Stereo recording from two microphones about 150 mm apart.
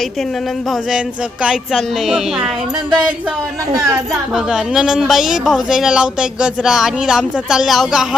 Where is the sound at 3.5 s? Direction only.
25° right (ahead or behind).